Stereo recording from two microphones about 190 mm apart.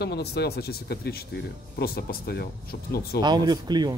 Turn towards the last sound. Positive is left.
turn(degrees=-20)  # may be behind; listen again after turning